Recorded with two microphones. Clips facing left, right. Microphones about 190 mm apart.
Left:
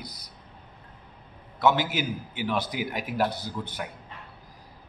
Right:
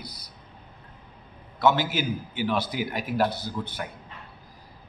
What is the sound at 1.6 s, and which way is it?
A man's voice, 15° left (ahead or behind).